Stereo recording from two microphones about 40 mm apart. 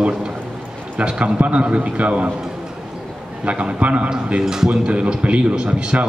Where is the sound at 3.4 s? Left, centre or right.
Right.